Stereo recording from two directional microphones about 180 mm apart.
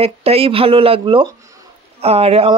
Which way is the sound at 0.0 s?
35° right (ahead or behind).